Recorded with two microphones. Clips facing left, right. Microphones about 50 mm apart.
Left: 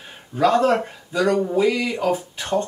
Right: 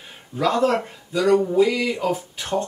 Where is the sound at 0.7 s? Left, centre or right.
Centre.